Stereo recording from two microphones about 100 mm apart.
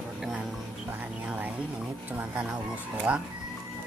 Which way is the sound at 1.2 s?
15° right (ahead or behind).